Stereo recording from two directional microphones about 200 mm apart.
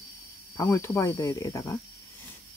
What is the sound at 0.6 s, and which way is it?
Speech, 15° left (ahead or behind).